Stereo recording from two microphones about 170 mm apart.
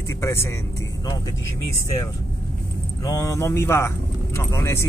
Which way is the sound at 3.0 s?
20° left (ahead or behind).